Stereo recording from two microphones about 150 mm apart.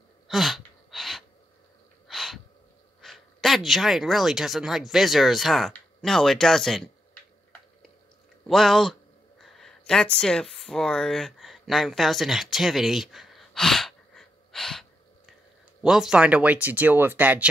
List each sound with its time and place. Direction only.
0.3 s gasp: centre (ahead or behind)
3.0 s speech: centre (ahead or behind)
8.5 s a man's voice: centre (ahead or behind)
9.4 s a sound: centre (ahead or behind)
15.8 s speech: 5° right (ahead or behind)